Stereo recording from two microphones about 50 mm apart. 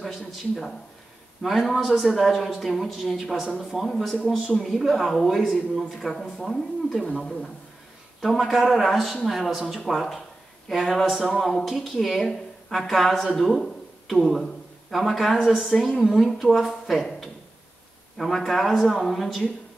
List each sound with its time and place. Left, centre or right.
0.0 s speech: centre
8.2 s a woman's voice: centre